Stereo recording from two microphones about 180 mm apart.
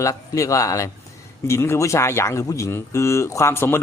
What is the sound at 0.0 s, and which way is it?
A man's voice, 15° left (ahead or behind).